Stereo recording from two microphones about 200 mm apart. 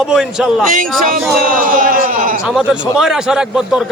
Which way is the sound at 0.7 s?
45° right (ahead or behind).